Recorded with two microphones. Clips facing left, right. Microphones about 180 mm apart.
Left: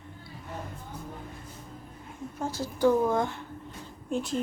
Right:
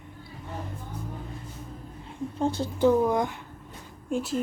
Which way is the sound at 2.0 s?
30° right (ahead or behind).